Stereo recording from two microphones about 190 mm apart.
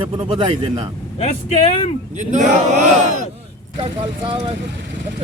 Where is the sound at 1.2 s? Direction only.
35° left (ahead or behind).